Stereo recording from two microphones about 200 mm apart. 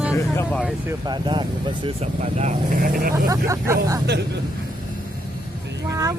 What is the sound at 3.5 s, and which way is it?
Speech, 15° right (ahead or behind).